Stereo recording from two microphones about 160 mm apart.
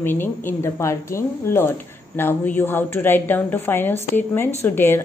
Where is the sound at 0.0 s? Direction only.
15° left (ahead or behind).